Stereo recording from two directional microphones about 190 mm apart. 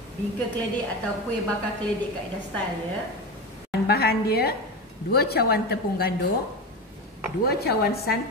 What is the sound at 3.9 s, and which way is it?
A woman's voice, 55° left (ahead or behind).